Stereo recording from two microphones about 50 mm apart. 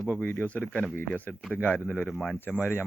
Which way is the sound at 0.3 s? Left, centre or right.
Left.